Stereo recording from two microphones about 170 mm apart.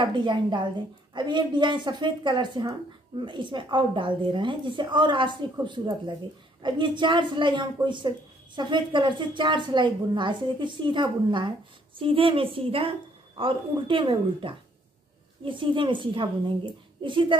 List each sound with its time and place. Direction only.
0.0 s a woman's voice: 30° right (ahead or behind)